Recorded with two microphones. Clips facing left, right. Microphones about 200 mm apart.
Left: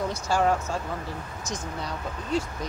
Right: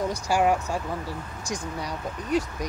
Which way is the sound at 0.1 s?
15° right (ahead or behind).